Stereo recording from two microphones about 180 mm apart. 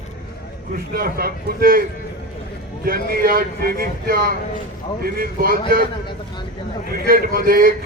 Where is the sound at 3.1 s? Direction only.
55° right (ahead or behind).